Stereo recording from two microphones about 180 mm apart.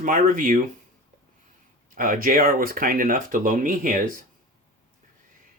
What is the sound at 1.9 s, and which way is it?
Speech, 50° right (ahead or behind).